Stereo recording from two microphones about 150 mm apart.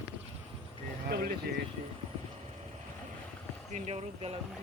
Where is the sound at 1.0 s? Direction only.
90° right.